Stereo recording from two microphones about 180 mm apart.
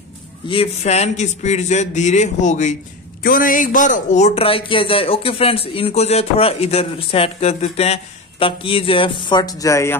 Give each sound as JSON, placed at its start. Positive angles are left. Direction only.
{"t": 0.5, "sound": "speech", "side_deg": 35}
{"t": 3.2, "sound": "speech", "side_deg": 50}